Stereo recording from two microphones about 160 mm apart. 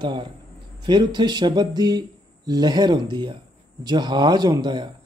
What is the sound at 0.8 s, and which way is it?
Speech, 30° right (ahead or behind).